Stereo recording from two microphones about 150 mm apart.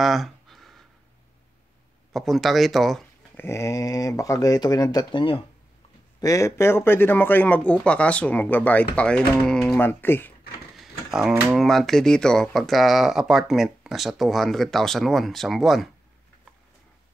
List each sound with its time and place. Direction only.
0.0 s a sound: centre (ahead or behind)
2.1 s speech: centre (ahead or behind)
3.3 s speech: 20° left (ahead or behind)
6.2 s speech: 20° left (ahead or behind); by 9.8 s 5° left (ahead or behind)
9.8 s speech: 15° left (ahead or behind)
10.8 s speech: centre (ahead or behind)